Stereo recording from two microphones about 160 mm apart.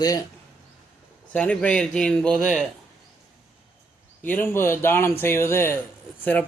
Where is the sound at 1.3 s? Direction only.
10° left (ahead or behind).